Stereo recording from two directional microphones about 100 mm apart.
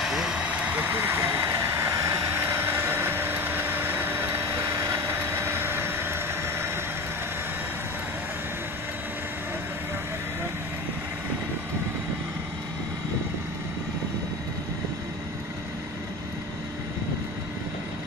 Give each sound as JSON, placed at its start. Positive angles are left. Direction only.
{"t": 0.0, "sound": "vehicle", "side_deg": -5}